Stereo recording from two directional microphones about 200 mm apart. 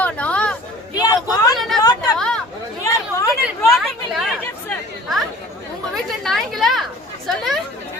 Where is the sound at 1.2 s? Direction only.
20° left (ahead or behind).